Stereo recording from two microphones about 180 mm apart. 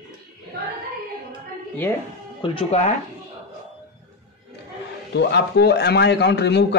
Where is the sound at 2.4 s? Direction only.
30° left (ahead or behind).